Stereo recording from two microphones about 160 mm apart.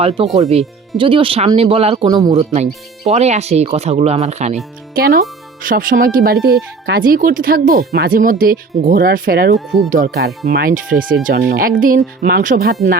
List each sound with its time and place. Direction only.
0.0 s speech: 35° right (ahead or behind)
4.9 s speech: 70° right (ahead or behind)
9.6 s speech: centre (ahead or behind)
9.9 s speech: 65° right (ahead or behind)